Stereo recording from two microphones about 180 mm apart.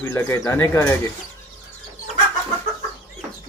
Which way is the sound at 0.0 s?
15° left (ahead or behind).